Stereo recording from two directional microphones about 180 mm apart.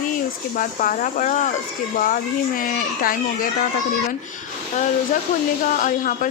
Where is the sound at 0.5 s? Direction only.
45° left (ahead or behind).